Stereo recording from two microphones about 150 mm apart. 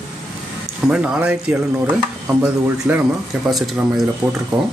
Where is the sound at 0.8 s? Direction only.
5° right (ahead or behind).